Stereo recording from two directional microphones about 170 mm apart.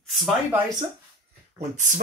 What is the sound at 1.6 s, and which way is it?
Speech, 45° right (ahead or behind).